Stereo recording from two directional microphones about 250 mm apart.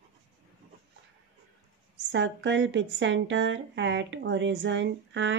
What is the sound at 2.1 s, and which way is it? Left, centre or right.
Speech, right.